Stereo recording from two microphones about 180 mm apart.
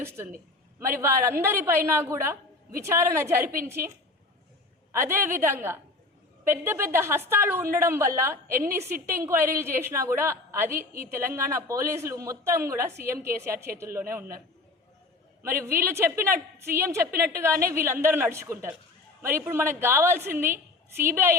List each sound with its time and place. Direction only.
0.8 s a woman's voice: 15° right (ahead or behind)
15.4 s a woman's voice: 15° right (ahead or behind)